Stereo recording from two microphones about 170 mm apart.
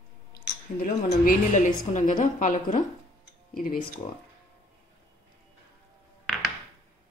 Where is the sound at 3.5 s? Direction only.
60° left (ahead or behind).